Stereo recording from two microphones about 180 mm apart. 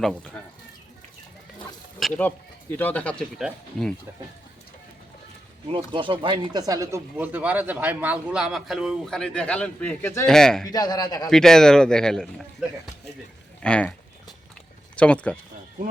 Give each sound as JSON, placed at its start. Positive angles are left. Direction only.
{"t": 0.0, "sound": "speech", "side_deg": 0}
{"t": 2.0, "sound": "speech", "side_deg": 5}
{"t": 5.7, "sound": "speech", "side_deg": -30}
{"t": 10.2, "sound": "speech", "side_deg": 5}
{"t": 10.7, "sound": "a man's voice", "side_deg": 20}
{"t": 11.3, "sound": "speech", "side_deg": 5}
{"t": 13.6, "sound": "a sound", "side_deg": 5}
{"t": 14.9, "sound": "speech", "side_deg": 5}